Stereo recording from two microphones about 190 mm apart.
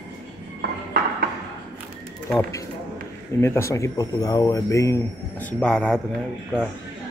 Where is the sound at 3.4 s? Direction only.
15° left (ahead or behind).